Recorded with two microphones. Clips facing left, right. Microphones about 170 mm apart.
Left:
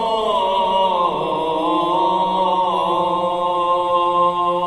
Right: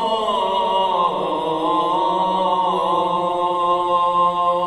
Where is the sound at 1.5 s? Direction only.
15° left (ahead or behind).